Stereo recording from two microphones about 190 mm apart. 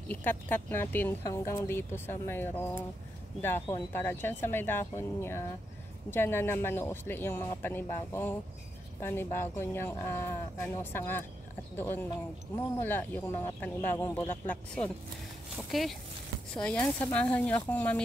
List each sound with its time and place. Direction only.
0.1 s speech: 10° left (ahead or behind)